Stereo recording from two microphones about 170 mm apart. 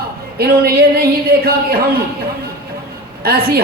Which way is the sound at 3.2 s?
65° right (ahead or behind).